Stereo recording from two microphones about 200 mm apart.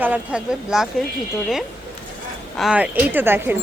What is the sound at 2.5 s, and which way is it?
Speech, 5° right (ahead or behind).